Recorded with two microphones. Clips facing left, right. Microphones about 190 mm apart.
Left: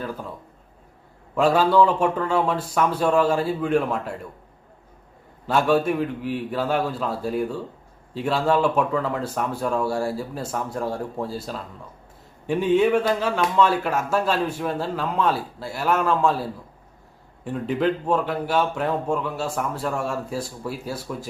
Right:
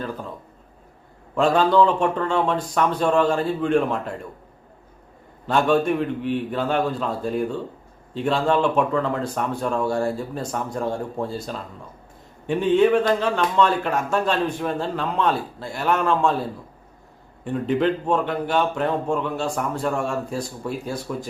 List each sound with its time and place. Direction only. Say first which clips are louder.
1.4 s speech: even; 10° left (ahead or behind)
5.5 s a man's voice: right 1 dB; 5° left (ahead or behind)